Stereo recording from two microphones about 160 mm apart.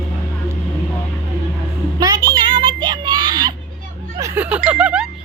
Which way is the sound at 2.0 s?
25° right (ahead or behind).